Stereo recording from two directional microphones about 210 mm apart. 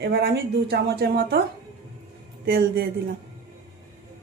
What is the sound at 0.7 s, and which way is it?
Speech, 50° right (ahead or behind).